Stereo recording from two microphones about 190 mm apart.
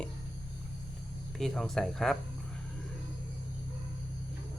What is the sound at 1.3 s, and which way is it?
Speech, centre (ahead or behind).